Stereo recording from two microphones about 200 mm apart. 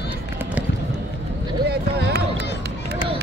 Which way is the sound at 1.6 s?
55° right (ahead or behind).